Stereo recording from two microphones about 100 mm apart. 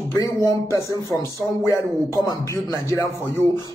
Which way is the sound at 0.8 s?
30° left (ahead or behind).